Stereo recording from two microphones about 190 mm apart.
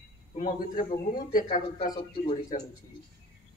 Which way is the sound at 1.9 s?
25° left (ahead or behind).